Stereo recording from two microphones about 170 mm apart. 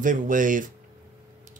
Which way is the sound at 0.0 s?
50° right (ahead or behind).